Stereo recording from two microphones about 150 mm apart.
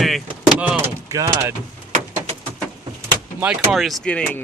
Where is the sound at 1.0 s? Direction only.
25° right (ahead or behind).